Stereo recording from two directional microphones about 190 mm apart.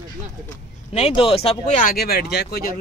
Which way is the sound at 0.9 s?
30° left (ahead or behind).